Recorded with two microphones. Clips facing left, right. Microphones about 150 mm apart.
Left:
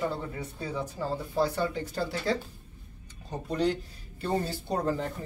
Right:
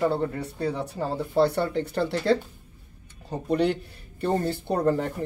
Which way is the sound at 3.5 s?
60° right (ahead or behind).